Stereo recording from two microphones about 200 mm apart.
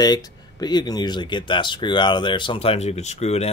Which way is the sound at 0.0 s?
20° left (ahead or behind).